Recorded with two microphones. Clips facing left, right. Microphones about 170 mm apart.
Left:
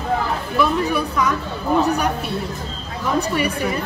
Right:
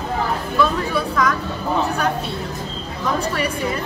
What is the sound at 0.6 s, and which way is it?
Speech, 10° left (ahead or behind).